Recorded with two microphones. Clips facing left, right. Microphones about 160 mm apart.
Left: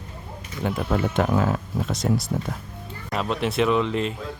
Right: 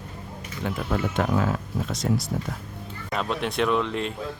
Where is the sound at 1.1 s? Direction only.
30° left (ahead or behind).